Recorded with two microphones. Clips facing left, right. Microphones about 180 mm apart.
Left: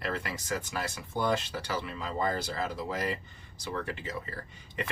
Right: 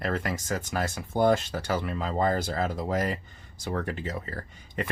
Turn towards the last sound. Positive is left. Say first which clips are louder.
# right 4 dB
turn(degrees=-45)  # may be behind; listen again after turning